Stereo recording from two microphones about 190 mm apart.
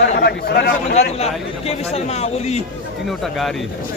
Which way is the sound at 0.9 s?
35° left (ahead or behind).